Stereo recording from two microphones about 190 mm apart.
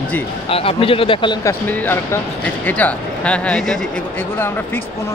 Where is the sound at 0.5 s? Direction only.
30° left (ahead or behind).